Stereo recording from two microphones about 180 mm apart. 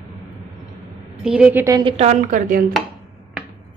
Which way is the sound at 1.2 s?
5° right (ahead or behind).